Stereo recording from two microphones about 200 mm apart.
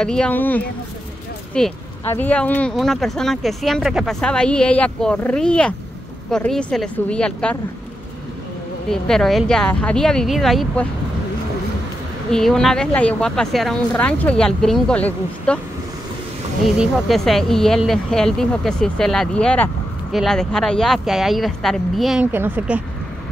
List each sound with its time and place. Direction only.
0.0 s speech: 5° left (ahead or behind)
8.8 s speech: 5° left (ahead or behind)
12.3 s speech: 5° left (ahead or behind)
16.6 s speech: 5° right (ahead or behind)